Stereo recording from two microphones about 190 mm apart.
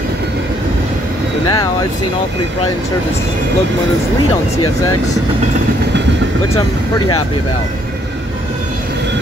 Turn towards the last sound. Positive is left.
turn(degrees=20)  # may be behind; listen again after turning